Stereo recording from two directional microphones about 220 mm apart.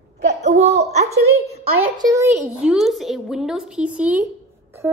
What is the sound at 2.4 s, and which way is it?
A woman's voice, centre (ahead or behind).